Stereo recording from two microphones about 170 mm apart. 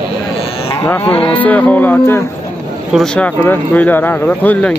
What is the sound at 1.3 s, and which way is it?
Speech, 10° left (ahead or behind).